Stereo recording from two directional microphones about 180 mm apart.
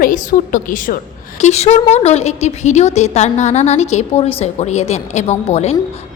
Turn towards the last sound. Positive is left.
turn(degrees=35)  # may be behind; listen again after turning